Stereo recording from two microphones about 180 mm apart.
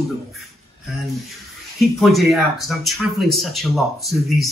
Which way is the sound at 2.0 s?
Centre (ahead or behind).